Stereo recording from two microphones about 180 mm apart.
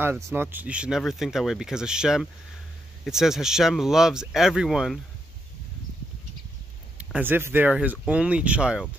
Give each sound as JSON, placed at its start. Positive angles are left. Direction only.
{"t": 0.0, "sound": "speech", "side_deg": -10}
{"t": 7.0, "sound": "speech", "side_deg": -10}